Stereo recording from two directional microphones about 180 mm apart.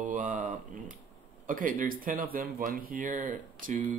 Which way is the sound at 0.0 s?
45° right (ahead or behind).